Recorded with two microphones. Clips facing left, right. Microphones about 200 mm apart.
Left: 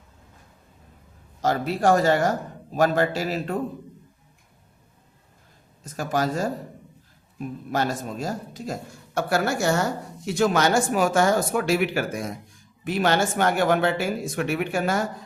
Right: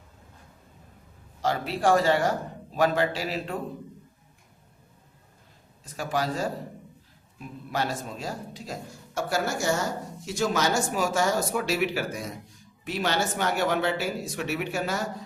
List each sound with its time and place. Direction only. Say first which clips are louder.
1.4 s a man's voice: left 4 dB; 45° left (ahead or behind)
5.8 s a man's voice: left 4 dB; 45° left (ahead or behind)